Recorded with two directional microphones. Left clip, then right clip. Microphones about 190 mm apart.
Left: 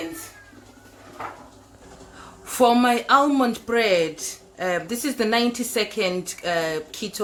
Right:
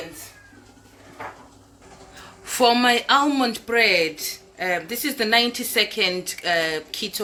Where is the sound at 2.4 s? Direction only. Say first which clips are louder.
Even; 15° left (ahead or behind).